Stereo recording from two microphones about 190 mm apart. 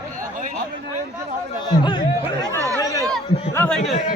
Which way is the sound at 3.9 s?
40° left (ahead or behind).